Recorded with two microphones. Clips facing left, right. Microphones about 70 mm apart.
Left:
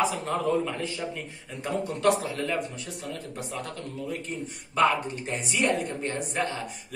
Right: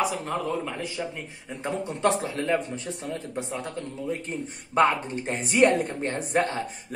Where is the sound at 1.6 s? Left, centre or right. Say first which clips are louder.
Right 1 dB; right.